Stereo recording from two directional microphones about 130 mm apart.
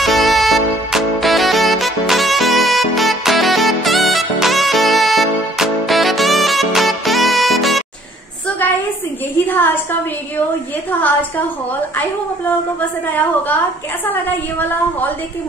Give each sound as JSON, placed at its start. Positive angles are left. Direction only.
{"t": 0.0, "sound": "music", "side_deg": 0}
{"t": 9.5, "sound": "a sound", "side_deg": 15}
{"t": 10.9, "sound": "a woman's voice", "side_deg": 15}
{"t": 13.1, "sound": "a woman's voice", "side_deg": 15}